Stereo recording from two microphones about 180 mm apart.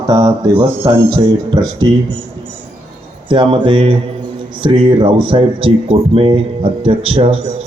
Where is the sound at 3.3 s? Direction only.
25° right (ahead or behind).